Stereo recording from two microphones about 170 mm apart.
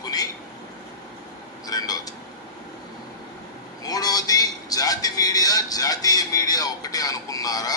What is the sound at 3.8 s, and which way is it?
A man's voice, 20° left (ahead or behind).